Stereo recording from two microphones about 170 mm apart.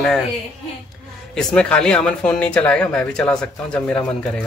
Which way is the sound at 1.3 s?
5° left (ahead or behind).